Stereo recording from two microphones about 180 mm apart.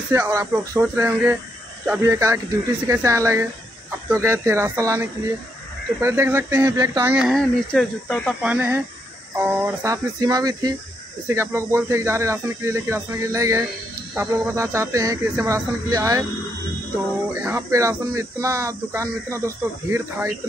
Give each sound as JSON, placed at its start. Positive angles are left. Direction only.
{"t": 0.1, "sound": "speech", "side_deg": -15}
{"t": 8.4, "sound": "speech", "side_deg": -10}
{"t": 17.3, "sound": "speech", "side_deg": -15}